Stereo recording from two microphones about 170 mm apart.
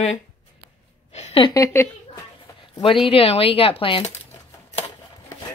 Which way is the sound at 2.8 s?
30° left (ahead or behind).